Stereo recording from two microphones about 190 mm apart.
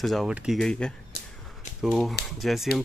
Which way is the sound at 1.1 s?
55° right (ahead or behind).